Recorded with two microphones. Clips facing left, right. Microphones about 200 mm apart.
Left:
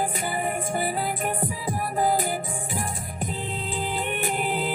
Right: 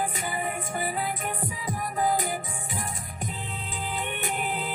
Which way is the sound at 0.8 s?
35° left (ahead or behind).